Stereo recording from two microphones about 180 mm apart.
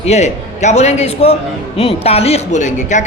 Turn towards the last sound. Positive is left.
turn(degrees=45)  # may be behind; listen again after turning